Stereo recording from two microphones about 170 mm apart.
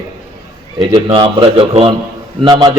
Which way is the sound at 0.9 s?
30° right (ahead or behind).